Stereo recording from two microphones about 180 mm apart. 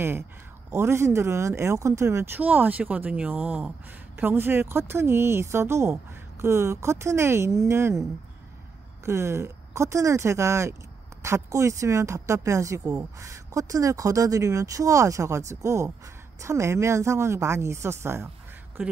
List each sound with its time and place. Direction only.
0.7 s speech: 15° right (ahead or behind)
9.0 s speech: 15° right (ahead or behind)